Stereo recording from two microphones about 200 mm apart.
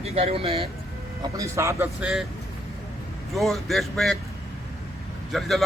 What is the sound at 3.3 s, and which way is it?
Speech, centre (ahead or behind).